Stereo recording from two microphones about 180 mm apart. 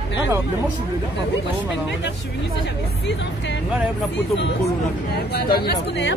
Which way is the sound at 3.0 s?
80° left.